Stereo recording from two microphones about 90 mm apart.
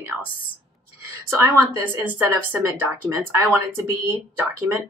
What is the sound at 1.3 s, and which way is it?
Speech, 30° right (ahead or behind).